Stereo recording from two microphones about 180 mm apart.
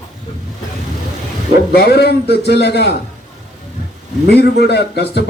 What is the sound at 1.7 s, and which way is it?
A man's voice, 65° left (ahead or behind).